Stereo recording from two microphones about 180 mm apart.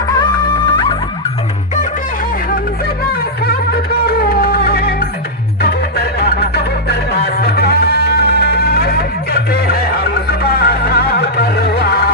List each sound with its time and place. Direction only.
0.2 s music: 25° left (ahead or behind)
3.1 s music: 60° left (ahead or behind)